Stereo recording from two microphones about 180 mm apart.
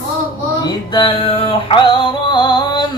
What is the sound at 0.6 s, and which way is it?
Music, 25° left (ahead or behind).